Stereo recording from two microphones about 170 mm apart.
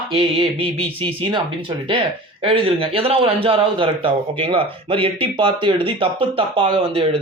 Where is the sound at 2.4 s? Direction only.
30° right (ahead or behind).